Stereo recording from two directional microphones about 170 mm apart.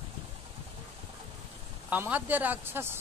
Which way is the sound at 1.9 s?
10° right (ahead or behind).